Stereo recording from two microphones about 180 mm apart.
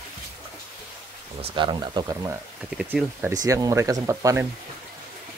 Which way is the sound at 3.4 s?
20° right (ahead or behind).